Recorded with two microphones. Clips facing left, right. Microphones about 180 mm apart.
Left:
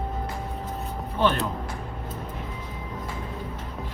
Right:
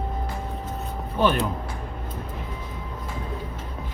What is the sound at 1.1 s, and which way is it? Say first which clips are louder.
Speech: right 2 dB; 15° right (ahead or behind).